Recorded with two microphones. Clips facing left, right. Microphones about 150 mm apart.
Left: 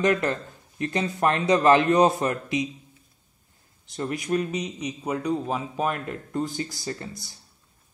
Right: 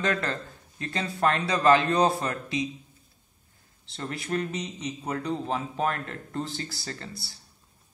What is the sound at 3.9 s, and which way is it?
A man's voice, 15° left (ahead or behind).